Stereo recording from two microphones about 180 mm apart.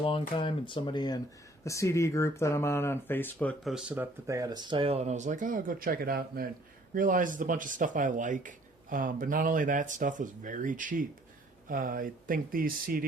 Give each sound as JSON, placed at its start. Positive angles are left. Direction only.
{"t": 0.0, "sound": "speech", "side_deg": 30}